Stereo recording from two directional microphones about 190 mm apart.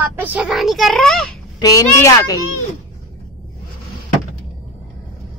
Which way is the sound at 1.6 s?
20° left (ahead or behind).